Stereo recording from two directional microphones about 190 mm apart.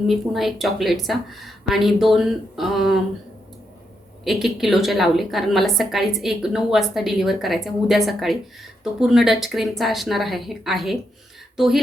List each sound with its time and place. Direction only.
0.1 s a woman's voice: centre (ahead or behind)
4.2 s a woman's voice: centre (ahead or behind)